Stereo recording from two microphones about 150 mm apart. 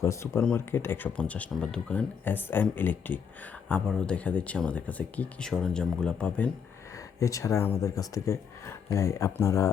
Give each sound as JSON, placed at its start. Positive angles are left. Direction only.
{"t": 0.0, "sound": "speech", "side_deg": 20}
{"t": 7.2, "sound": "speech", "side_deg": 20}